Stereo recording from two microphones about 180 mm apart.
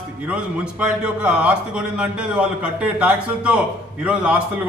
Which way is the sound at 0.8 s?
5° right (ahead or behind).